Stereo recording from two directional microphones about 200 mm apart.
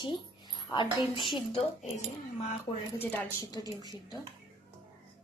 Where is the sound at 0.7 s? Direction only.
25° left (ahead or behind).